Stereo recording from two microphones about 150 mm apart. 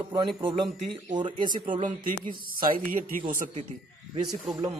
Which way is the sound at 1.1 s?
30° right (ahead or behind).